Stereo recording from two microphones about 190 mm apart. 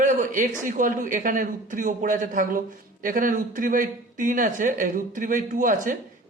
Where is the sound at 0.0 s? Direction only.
45° right (ahead or behind).